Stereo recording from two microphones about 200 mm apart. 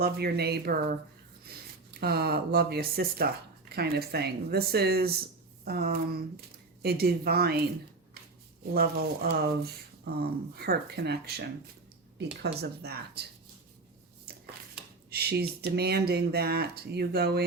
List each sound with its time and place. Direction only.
0.0 s speech: 50° right (ahead or behind)
8.7 s speech: 50° right (ahead or behind)
15.1 s speech: 50° right (ahead or behind)